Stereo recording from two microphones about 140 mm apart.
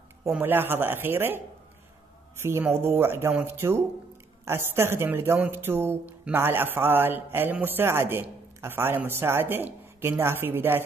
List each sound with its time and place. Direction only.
0.4 s speech: 15° right (ahead or behind)